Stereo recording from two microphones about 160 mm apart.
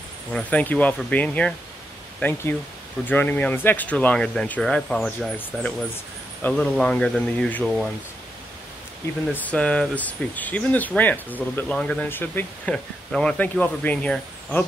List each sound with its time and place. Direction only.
0.3 s speech: 5° left (ahead or behind)
9.3 s speech: 5° left (ahead or behind)